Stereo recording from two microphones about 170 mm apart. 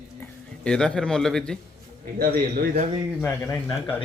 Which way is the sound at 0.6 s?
5° left (ahead or behind).